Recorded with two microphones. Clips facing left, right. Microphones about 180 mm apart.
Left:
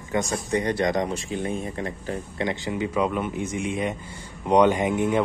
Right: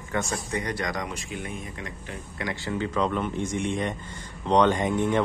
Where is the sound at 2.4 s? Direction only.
20° left (ahead or behind).